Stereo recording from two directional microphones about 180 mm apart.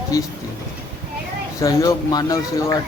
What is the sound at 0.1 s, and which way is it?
Speech, 20° left (ahead or behind).